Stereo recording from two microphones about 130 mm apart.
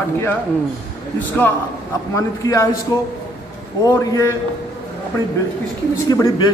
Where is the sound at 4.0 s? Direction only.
25° left (ahead or behind).